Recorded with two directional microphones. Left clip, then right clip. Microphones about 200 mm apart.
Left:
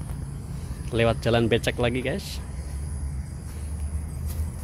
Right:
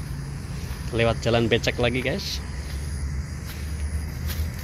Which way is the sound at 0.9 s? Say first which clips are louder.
Even; 20° left (ahead or behind).